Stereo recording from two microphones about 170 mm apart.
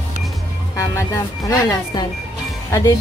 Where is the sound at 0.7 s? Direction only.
15° left (ahead or behind).